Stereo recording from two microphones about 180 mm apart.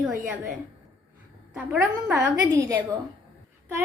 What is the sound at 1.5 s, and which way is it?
Speech, 10° right (ahead or behind).